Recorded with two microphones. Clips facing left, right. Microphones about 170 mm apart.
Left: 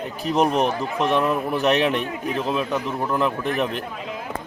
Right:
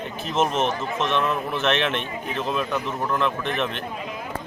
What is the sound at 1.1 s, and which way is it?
A man's voice, 10° left (ahead or behind).